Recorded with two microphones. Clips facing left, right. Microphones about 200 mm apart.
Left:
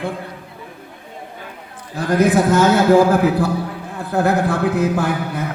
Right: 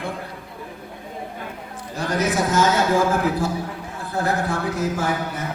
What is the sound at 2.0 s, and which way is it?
A man's voice, 55° left (ahead or behind).